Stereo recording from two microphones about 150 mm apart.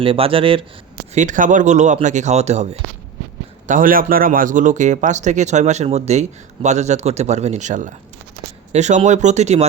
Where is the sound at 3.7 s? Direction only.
65° right (ahead or behind).